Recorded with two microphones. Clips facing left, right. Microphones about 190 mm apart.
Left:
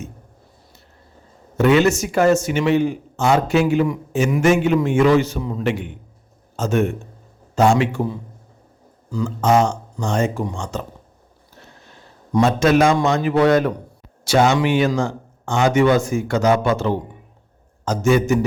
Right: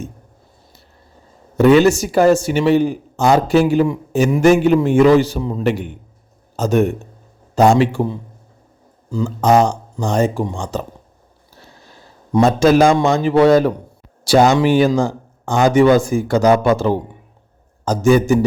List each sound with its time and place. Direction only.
1.5 s a man's voice: 35° right (ahead or behind)
9.0 s a man's voice: 30° right (ahead or behind)